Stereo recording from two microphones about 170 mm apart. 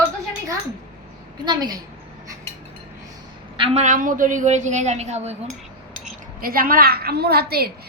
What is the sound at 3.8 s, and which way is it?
A woman's voice, 50° right (ahead or behind).